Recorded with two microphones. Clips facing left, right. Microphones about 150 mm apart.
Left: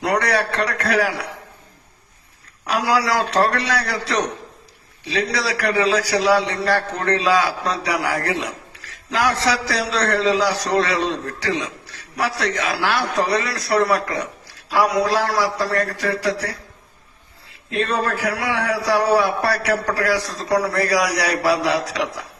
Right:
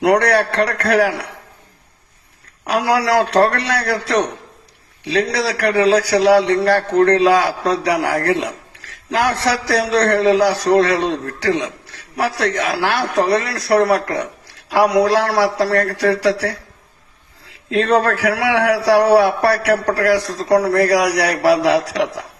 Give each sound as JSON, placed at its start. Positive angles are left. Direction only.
{"t": 0.0, "sound": "a man's voice", "side_deg": -60}
{"t": 2.6, "sound": "a man's voice", "side_deg": -55}
{"t": 17.7, "sound": "a man's voice", "side_deg": -80}